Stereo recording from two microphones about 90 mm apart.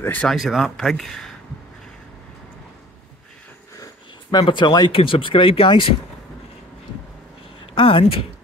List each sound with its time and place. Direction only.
0.0 s speech: 20° left (ahead or behind)
0.3 s speech: centre (ahead or behind)
3.8 s a sound: 50° left (ahead or behind)
4.5 s speech: 60° left (ahead or behind); by 5.9 s 90° left
7.6 s speech: 80° left